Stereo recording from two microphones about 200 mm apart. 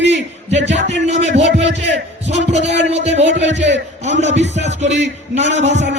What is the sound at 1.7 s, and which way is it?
A man's voice, 60° right (ahead or behind).